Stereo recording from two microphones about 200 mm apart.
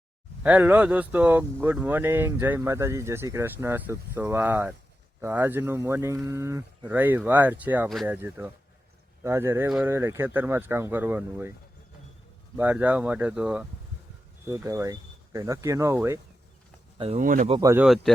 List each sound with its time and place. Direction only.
0.4 s speech: 10° right (ahead or behind)
9.6 s speech: centre (ahead or behind)
9.9 s speech: 15° right (ahead or behind)
12.5 s speech: 10° right (ahead or behind)
17.0 s speech: 30° right (ahead or behind)
17.2 s speech: 40° right (ahead or behind)
17.5 s speech: 15° right (ahead or behind)
17.8 s speech: centre (ahead or behind)